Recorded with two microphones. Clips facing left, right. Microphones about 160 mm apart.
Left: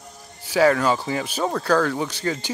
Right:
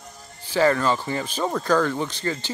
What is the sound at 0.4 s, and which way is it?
Speech, 10° left (ahead or behind).